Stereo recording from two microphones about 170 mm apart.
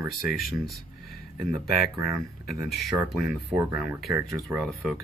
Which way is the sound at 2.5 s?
Centre (ahead or behind).